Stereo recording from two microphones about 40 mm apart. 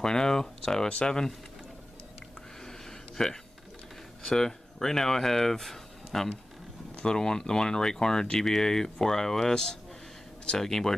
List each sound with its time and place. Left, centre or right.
0.0 s speech: centre
2.6 s a sound: centre
4.2 s speech: centre